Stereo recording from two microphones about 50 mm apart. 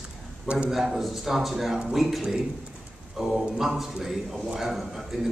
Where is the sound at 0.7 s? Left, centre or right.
Centre.